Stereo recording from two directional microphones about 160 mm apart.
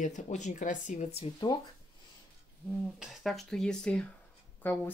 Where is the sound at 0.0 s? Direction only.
50° left (ahead or behind).